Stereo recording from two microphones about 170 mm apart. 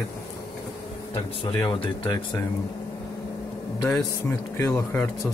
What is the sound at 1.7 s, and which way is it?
Speech, 25° left (ahead or behind).